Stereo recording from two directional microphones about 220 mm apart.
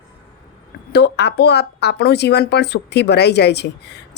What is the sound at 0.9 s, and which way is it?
A woman's voice, 50° left (ahead or behind).